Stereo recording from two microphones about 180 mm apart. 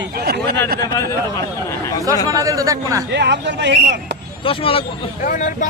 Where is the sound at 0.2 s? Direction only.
60° right (ahead or behind).